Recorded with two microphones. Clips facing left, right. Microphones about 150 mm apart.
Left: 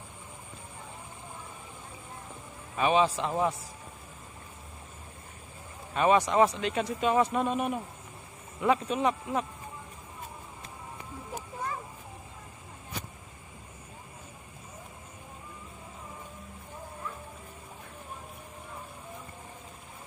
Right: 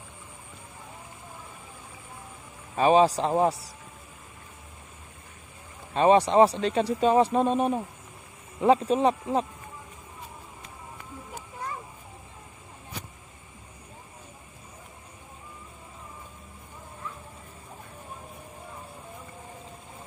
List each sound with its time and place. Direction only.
2.7 s a man's voice: 35° right (ahead or behind)
5.9 s a man's voice: 30° right (ahead or behind)